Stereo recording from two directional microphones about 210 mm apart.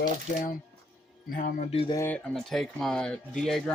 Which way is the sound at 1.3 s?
40° left (ahead or behind).